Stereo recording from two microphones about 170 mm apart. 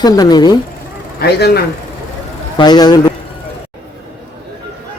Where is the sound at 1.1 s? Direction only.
65° left (ahead or behind).